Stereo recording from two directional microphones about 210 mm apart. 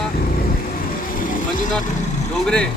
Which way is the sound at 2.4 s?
5° left (ahead or behind).